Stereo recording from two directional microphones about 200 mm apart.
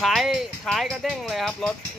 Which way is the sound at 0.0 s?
Centre (ahead or behind).